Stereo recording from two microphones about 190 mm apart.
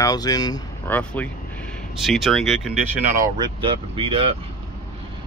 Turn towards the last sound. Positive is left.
turn(degrees=-30)  # may be behind; listen again after turning